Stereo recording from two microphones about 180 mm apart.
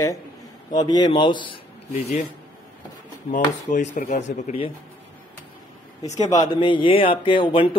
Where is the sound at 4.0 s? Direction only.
40° left (ahead or behind).